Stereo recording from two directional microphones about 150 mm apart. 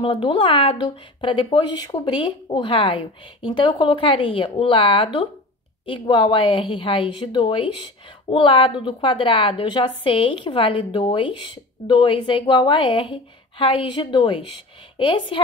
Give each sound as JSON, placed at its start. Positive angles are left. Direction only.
{"t": 0.0, "sound": "a woman's voice", "side_deg": 35}